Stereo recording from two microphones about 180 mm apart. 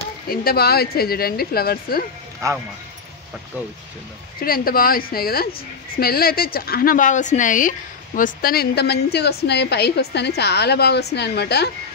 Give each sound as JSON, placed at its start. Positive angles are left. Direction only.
{"t": 0.3, "sound": "a woman's voice", "side_deg": 55}
{"t": 2.4, "sound": "speech", "side_deg": -20}
{"t": 4.4, "sound": "a woman's voice", "side_deg": 55}